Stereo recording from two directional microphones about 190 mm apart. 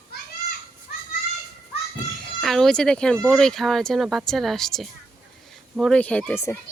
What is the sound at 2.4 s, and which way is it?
A woman's voice, centre (ahead or behind).